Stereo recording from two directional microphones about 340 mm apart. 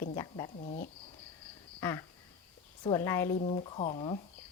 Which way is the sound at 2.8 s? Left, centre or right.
Centre.